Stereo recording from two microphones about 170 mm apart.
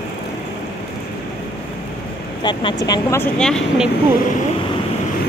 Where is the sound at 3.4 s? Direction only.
5° left (ahead or behind).